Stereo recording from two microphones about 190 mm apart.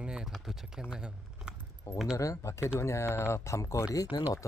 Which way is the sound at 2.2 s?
15° left (ahead or behind).